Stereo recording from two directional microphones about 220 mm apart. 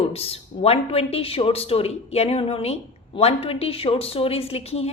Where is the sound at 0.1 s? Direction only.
25° left (ahead or behind).